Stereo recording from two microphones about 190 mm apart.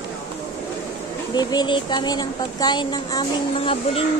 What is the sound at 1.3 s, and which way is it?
Speech, 25° left (ahead or behind).